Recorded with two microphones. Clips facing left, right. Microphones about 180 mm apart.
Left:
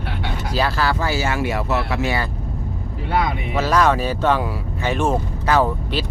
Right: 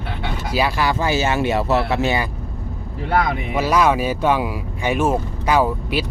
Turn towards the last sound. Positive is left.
turn(degrees=-10)  # may be behind; listen again after turning